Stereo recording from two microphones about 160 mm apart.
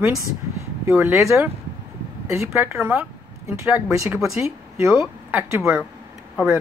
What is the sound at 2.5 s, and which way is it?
A woman's voice, 10° right (ahead or behind).